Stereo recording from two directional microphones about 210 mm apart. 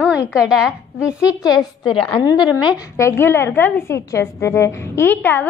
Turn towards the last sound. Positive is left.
turn(degrees=10)  # may be behind; listen again after turning